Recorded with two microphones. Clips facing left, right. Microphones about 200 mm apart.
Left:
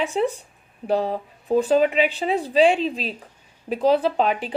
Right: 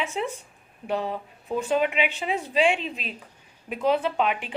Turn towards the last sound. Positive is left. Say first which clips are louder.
# left 4 dB
turn(degrees=35)  # may be behind; listen again after turning